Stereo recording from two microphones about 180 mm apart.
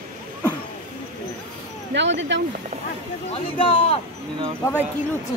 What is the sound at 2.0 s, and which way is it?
Speech, 80° right.